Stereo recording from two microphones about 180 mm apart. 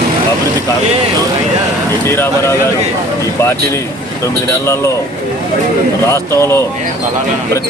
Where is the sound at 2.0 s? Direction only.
15° left (ahead or behind).